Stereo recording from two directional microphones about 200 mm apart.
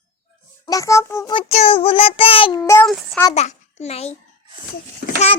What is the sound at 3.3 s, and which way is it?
Speech, 30° left (ahead or behind).